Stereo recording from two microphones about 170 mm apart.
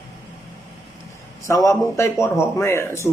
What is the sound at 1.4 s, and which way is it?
A man's voice, 20° left (ahead or behind).